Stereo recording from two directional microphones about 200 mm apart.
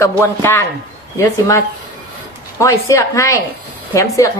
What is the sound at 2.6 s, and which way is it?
A woman's voice, 15° left (ahead or behind).